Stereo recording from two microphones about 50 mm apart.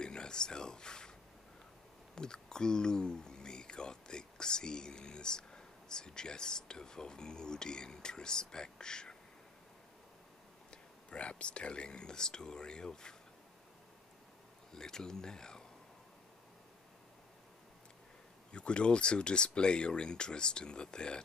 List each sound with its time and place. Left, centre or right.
0.0 s a sound: centre
2.1 s speech: centre
11.1 s speech: left
14.7 s speech: centre
18.5 s speech: left